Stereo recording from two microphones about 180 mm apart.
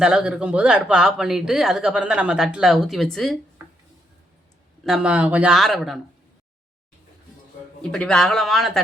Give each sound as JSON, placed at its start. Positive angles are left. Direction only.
{"t": 0.0, "sound": "speech", "side_deg": -5}
{"t": 4.8, "sound": "speech", "side_deg": 0}
{"t": 7.8, "sound": "speech", "side_deg": 5}